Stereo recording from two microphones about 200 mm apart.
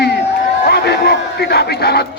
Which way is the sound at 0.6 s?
55° left (ahead or behind).